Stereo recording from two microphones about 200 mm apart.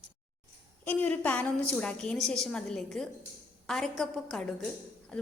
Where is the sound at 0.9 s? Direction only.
5° left (ahead or behind).